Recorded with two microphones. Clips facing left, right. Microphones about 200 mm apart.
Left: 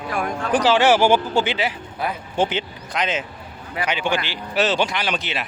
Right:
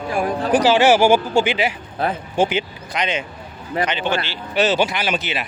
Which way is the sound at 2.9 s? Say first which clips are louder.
Right 1 dB; centre (ahead or behind).